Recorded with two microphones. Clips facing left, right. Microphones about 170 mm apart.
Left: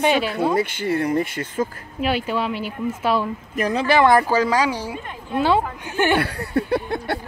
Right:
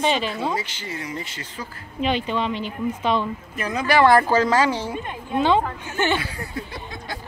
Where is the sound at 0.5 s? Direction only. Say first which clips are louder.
Left 9 dB; 55° left (ahead or behind).